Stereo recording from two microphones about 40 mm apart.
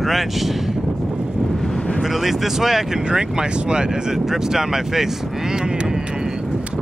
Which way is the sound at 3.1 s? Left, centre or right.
Right.